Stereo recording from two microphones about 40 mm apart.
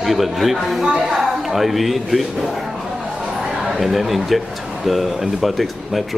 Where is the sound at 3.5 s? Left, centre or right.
Centre.